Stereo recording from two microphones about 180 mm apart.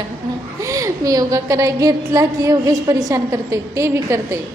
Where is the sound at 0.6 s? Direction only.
20° right (ahead or behind).